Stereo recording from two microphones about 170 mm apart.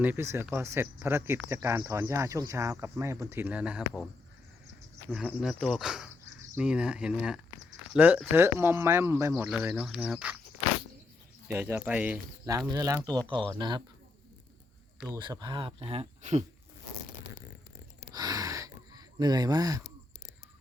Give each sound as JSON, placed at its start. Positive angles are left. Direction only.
{"t": 0.0, "sound": "speech", "side_deg": -15}
{"t": 5.1, "sound": "speech", "side_deg": -5}
{"t": 11.4, "sound": "speech", "side_deg": -10}
{"t": 12.5, "sound": "mechanisms", "side_deg": -20}
{"t": 15.1, "sound": "speech", "side_deg": -25}
{"t": 18.1, "sound": "a sound", "side_deg": -20}